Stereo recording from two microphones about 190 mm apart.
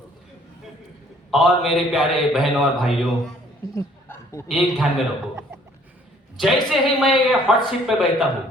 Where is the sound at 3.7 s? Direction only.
15° left (ahead or behind).